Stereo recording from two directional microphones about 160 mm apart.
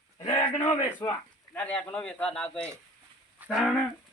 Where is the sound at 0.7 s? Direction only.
25° left (ahead or behind).